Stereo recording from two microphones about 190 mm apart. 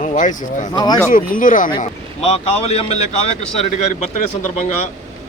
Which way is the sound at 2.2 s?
30° left (ahead or behind).